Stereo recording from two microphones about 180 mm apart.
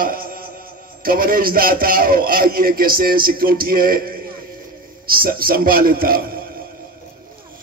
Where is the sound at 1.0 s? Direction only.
55° right (ahead or behind).